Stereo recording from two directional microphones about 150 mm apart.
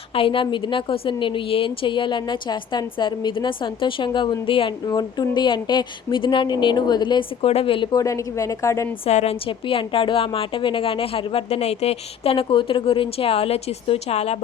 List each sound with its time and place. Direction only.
0.1 s a woman's voice: 35° left (ahead or behind)
8.0 s a woman's voice: 20° left (ahead or behind)
9.0 s a woman's voice: 45° left (ahead or behind)